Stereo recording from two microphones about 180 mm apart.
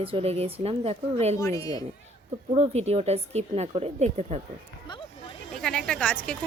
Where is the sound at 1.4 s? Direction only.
20° left (ahead or behind).